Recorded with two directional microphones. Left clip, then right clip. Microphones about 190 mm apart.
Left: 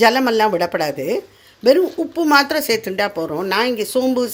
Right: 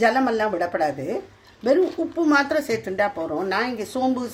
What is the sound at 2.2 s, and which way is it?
Speech, 45° left (ahead or behind).